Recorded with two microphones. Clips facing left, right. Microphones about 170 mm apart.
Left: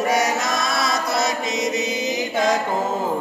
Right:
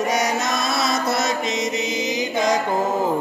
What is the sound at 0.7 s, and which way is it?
Chant, 25° right (ahead or behind).